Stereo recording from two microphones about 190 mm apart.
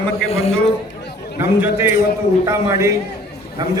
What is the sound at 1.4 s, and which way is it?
A man's voice, 15° right (ahead or behind).